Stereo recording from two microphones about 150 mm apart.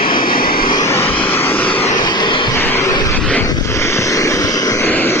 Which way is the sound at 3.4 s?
20° left (ahead or behind).